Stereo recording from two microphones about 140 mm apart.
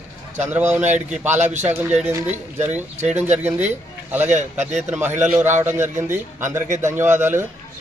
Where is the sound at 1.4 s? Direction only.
55° right (ahead or behind).